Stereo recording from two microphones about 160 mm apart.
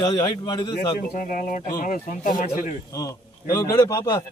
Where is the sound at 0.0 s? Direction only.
25° left (ahead or behind).